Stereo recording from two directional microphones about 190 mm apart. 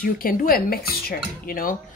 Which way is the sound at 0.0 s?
50° left (ahead or behind).